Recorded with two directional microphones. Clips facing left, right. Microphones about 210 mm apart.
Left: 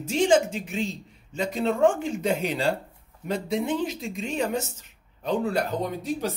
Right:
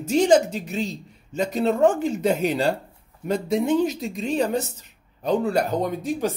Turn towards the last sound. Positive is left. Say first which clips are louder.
# right 4 dB
turn(degrees=-45)  # may be behind; listen again after turning